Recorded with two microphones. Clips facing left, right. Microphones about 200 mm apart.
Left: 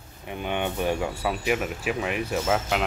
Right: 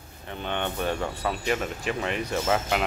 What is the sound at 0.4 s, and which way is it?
Speech, 10° left (ahead or behind).